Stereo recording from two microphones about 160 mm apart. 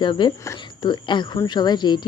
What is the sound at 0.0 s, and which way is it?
Speech, 30° left (ahead or behind).